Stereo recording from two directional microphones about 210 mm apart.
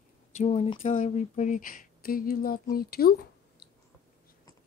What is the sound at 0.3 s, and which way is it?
A woman's voice, 30° left (ahead or behind).